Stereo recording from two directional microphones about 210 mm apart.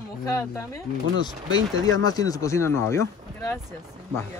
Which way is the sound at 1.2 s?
20° left (ahead or behind).